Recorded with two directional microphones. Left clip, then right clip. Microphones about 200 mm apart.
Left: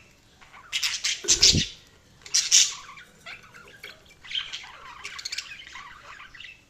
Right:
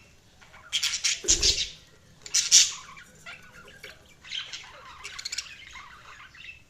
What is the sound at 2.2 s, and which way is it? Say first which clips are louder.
Bird: even; centre (ahead or behind).